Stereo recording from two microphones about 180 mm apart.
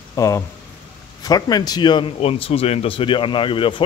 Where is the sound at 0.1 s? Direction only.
15° left (ahead or behind).